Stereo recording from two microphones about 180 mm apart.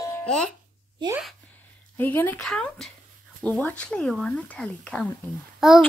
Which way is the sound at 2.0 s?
10° left (ahead or behind).